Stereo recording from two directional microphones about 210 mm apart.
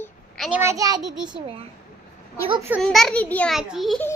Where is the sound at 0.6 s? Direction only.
15° right (ahead or behind).